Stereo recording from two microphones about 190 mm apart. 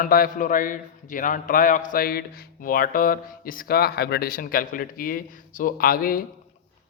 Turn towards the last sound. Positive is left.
turn(degrees=50)  # may be behind; listen again after turning